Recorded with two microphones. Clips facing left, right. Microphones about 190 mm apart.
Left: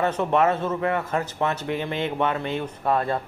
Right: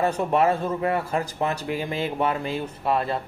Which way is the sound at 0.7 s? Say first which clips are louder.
Even; 35° right (ahead or behind).